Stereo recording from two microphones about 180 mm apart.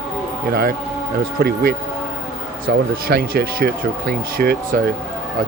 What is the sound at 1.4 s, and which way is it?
A man's voice, 60° right (ahead or behind).